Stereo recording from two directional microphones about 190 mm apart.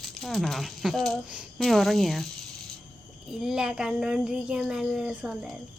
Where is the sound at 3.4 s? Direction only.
5° right (ahead or behind).